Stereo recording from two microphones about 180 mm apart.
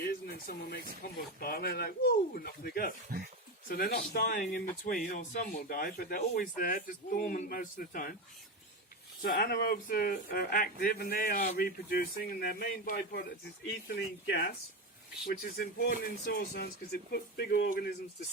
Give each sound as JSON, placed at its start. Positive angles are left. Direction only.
{"t": 0.0, "sound": "a sound", "side_deg": 60}
{"t": 1.0, "sound": "speech", "side_deg": 55}
{"t": 3.1, "sound": "speech", "side_deg": -55}
{"t": 3.7, "sound": "speech", "side_deg": 60}
{"t": 9.2, "sound": "speech", "side_deg": 55}
{"t": 13.7, "sound": "speech", "side_deg": 70}